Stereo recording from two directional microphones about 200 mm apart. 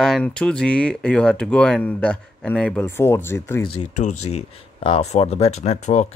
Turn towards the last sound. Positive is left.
turn(degrees=35)  # may be behind; listen again after turning